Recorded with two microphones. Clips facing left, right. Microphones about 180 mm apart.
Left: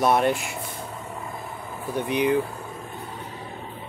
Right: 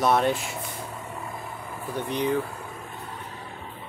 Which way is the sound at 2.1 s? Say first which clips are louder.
Left 4 dB; 10° left (ahead or behind).